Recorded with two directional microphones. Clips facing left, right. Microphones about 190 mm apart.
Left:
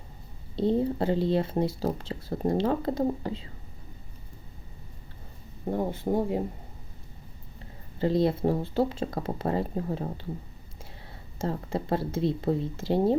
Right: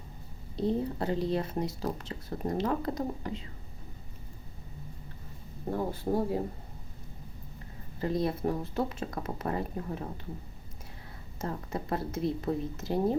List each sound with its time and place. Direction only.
0.5 s speech: 30° left (ahead or behind)
5.7 s speech: 20° left (ahead or behind)
7.9 s speech: 30° left (ahead or behind)
11.3 s speech: 30° left (ahead or behind)